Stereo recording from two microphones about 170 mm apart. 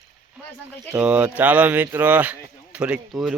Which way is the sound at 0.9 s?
5° right (ahead or behind).